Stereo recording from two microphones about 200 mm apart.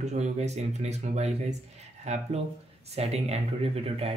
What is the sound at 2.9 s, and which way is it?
Speech, 30° right (ahead or behind).